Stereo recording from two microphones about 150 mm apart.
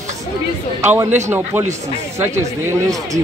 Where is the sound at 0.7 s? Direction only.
15° right (ahead or behind).